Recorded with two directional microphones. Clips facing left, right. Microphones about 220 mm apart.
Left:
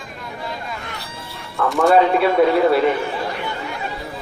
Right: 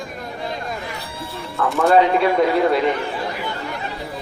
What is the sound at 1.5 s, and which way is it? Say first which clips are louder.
Speech: left 1 dB; centre (ahead or behind).